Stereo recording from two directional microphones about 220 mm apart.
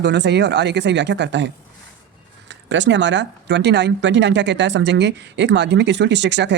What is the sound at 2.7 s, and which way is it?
Speech, 55° right (ahead or behind).